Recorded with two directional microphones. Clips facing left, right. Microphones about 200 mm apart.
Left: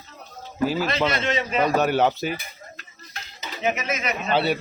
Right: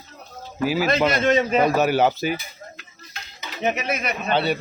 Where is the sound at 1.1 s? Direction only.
45° right (ahead or behind).